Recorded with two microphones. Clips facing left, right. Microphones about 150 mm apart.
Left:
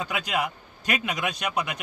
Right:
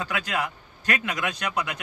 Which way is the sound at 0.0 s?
15° left (ahead or behind).